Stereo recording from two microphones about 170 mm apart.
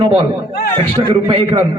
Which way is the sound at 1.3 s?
30° right (ahead or behind).